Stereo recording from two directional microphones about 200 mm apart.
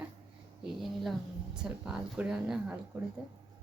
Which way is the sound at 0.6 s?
Centre (ahead or behind).